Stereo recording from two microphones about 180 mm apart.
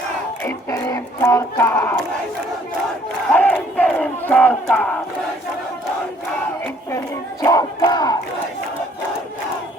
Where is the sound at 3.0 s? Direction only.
5° left (ahead or behind).